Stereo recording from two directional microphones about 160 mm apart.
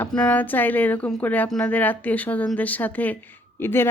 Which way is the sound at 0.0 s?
10° left (ahead or behind).